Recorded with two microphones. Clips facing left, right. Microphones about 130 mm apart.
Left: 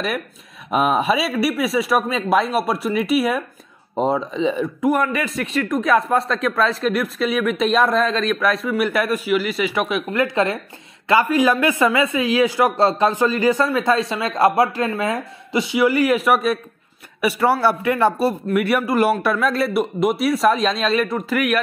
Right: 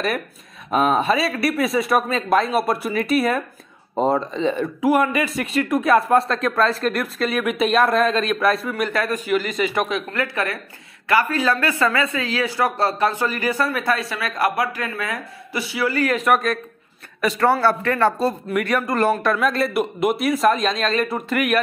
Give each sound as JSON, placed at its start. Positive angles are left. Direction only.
{"t": 0.7, "sound": "a man's voice", "side_deg": 10}